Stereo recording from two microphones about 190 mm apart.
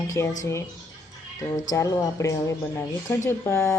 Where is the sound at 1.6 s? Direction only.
20° left (ahead or behind).